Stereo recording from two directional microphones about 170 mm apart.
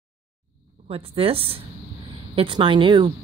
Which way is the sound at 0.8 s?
35° right (ahead or behind).